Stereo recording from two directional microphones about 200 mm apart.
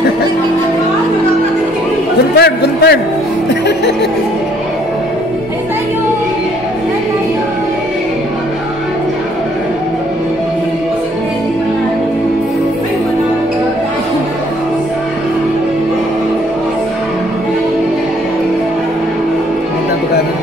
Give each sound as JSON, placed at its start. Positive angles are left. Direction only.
{"t": 2.3, "sound": "a man's voice", "side_deg": 55}